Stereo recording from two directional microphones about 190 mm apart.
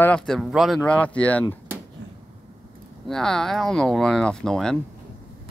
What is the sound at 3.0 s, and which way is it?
Speech, 5° left (ahead or behind).